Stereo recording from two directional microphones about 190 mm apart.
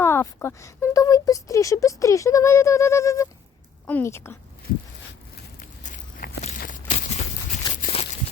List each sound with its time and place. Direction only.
0.0 s speech: 10° left (ahead or behind)
5.5 s walk: 45° left (ahead or behind)
7.7 s a sound: 45° left (ahead or behind)